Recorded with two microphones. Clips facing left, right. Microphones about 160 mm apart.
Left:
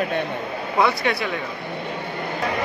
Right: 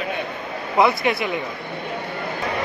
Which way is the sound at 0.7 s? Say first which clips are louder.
Right 2 dB; 15° right (ahead or behind).